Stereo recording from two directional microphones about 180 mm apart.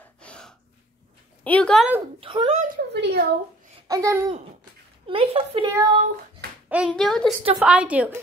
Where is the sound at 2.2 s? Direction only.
30° right (ahead or behind).